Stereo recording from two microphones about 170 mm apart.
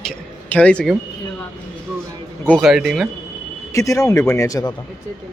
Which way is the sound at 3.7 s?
20° left (ahead or behind).